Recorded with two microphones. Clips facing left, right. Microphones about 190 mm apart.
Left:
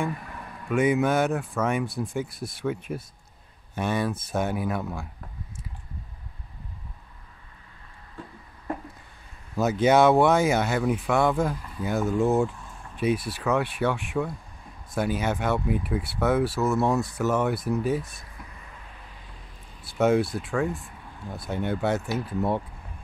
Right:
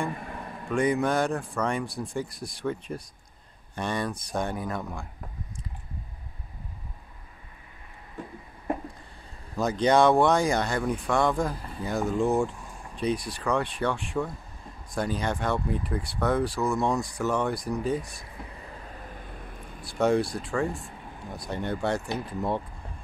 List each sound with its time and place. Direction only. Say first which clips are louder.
0.1 s vehicle: right 1 dB; 25° right (ahead or behind)
0.7 s speech: left 2 dB; 5° left (ahead or behind)
9.6 s speech: left 2 dB; 5° left (ahead or behind)
18.4 s vehicle: right 5 dB; 45° right (ahead or behind)
19.8 s speech: left 2 dB; 5° left (ahead or behind)